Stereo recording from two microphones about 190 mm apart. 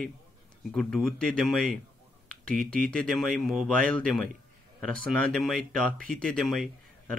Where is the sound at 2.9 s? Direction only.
Centre (ahead or behind).